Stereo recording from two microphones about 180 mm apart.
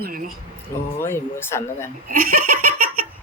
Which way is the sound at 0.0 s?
55° right (ahead or behind).